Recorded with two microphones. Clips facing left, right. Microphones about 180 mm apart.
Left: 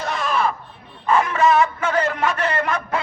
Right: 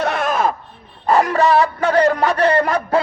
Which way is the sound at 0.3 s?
45° right (ahead or behind).